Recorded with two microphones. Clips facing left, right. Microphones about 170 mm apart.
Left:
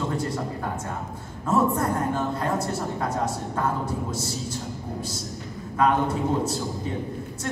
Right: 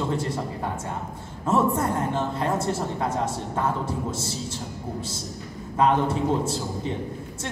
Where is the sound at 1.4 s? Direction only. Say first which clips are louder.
Even; 25° right (ahead or behind).